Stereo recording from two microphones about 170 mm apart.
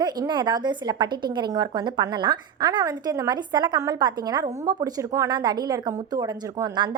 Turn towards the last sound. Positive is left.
turn(degrees=-25)  # may be behind; listen again after turning